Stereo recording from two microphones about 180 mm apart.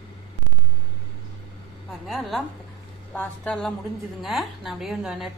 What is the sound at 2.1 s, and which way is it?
A woman's voice, centre (ahead or behind).